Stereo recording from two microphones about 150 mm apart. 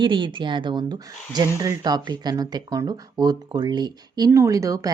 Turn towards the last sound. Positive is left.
turn(degrees=-20)  # may be behind; listen again after turning